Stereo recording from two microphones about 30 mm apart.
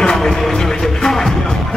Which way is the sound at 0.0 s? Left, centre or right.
Left.